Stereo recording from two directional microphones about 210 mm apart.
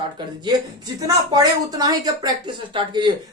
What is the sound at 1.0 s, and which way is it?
Speech, 20° right (ahead or behind).